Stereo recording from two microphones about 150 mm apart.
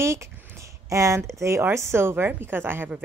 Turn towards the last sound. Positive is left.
turn(degrees=-15)  # may be behind; listen again after turning